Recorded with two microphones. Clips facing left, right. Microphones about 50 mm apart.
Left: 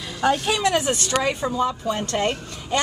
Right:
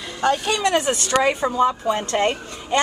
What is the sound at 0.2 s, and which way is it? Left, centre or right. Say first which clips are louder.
Speech: right 1 dB; centre.